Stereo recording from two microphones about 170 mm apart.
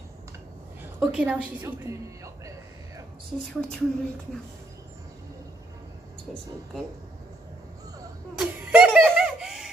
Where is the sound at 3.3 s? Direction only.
Centre (ahead or behind).